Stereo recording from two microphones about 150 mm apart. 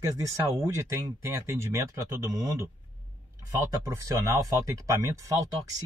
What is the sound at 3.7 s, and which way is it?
Speech, 20° right (ahead or behind).